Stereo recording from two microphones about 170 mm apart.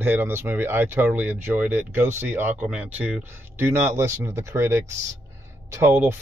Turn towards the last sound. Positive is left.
turn(degrees=-15)  # may be behind; listen again after turning